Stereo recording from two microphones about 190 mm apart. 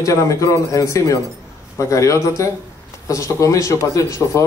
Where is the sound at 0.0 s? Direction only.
15° left (ahead or behind).